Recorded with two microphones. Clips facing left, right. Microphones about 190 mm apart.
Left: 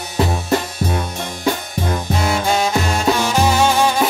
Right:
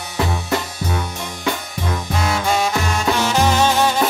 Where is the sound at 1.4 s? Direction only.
30° left (ahead or behind).